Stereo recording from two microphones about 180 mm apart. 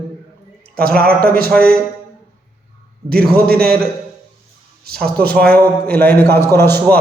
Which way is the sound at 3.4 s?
60° right (ahead or behind).